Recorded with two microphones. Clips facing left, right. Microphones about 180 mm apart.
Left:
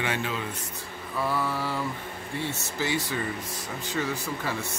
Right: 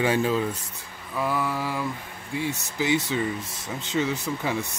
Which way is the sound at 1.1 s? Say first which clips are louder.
Right 2 dB; 15° right (ahead or behind).